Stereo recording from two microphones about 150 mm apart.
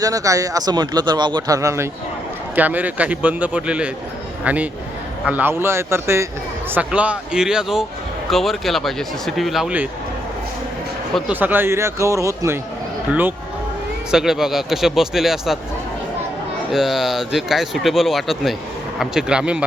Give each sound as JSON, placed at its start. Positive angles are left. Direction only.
{"t": 0.0, "sound": "a man's voice", "side_deg": -25}
{"t": 11.3, "sound": "a man's voice", "side_deg": -10}
{"t": 14.1, "sound": "speech", "side_deg": -5}
{"t": 16.7, "sound": "speech", "side_deg": 0}